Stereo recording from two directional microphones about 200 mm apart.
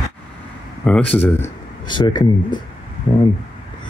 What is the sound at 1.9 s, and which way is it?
Speech, 20° left (ahead or behind).